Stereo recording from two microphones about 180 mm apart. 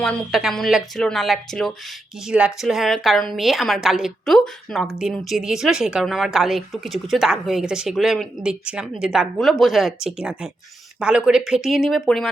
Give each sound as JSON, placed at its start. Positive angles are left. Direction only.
{"t": 0.0, "sound": "a woman's voice", "side_deg": 5}